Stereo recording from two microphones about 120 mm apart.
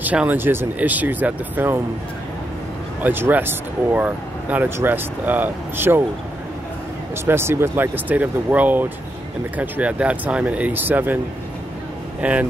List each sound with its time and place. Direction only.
0.0 s speech: 15° right (ahead or behind)
3.0 s speech: 15° right (ahead or behind)
7.2 s speech: 20° right (ahead or behind)
12.2 s speech: 10° right (ahead or behind)